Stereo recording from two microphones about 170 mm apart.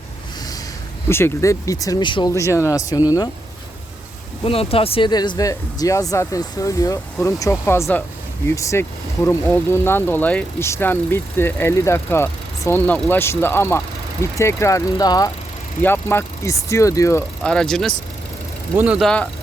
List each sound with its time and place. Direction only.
1.0 s speech: 15° left (ahead or behind)
4.4 s speech: 35° left (ahead or behind); by 17.2 s 20° left (ahead or behind)
17.4 s speech: 5° left (ahead or behind)